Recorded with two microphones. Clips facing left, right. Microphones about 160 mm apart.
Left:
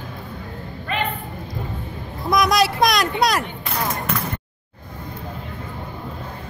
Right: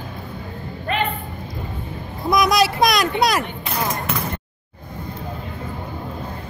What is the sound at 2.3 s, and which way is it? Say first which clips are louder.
Speech: right 1 dB; centre (ahead or behind).